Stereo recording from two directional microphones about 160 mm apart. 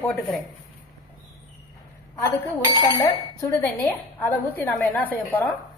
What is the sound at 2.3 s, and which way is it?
A woman's voice, 15° left (ahead or behind).